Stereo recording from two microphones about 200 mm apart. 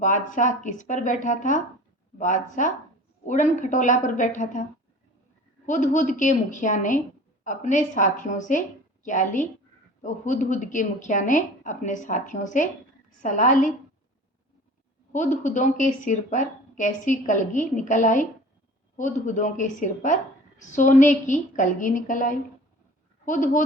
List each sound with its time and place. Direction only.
0.0 s a woman's voice: 40° left (ahead or behind)
5.6 s a woman's voice: 40° left (ahead or behind)
15.1 s a woman's voice: 40° left (ahead or behind)